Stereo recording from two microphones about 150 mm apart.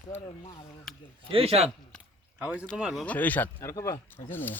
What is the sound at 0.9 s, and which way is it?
Speech, centre (ahead or behind).